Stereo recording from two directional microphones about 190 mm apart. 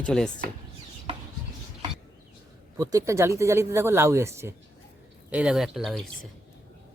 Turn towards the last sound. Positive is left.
turn(degrees=0)  # may be behind; listen again after turning